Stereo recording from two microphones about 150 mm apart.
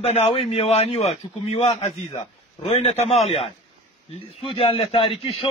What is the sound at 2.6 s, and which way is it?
A man's voice, 45° left (ahead or behind).